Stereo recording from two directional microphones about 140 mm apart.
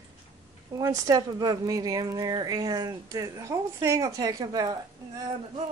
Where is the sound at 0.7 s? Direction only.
25° right (ahead or behind).